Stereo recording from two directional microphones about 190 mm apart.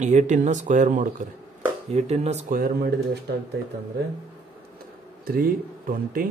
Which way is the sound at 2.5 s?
55° right (ahead or behind).